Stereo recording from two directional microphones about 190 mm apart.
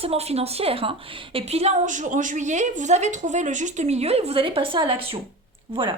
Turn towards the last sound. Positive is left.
turn(degrees=-25)  # may be behind; listen again after turning